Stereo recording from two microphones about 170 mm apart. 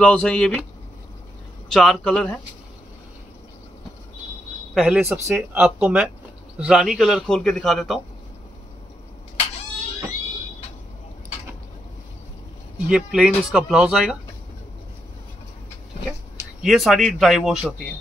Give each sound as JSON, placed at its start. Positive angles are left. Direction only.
{"t": 0.0, "sound": "a man's voice", "side_deg": 5}
{"t": 1.7, "sound": "a man's voice", "side_deg": 0}
{"t": 4.7, "sound": "a man's voice", "side_deg": -5}
{"t": 5.0, "sound": "speech", "side_deg": -15}
{"t": 5.5, "sound": "a man's voice", "side_deg": -5}
{"t": 12.7, "sound": "a man's voice", "side_deg": -5}
{"t": 16.6, "sound": "a man's voice", "side_deg": 0}